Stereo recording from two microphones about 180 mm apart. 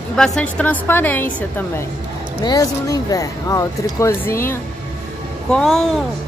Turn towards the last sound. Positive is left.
turn(degrees=0)  # may be behind; listen again after turning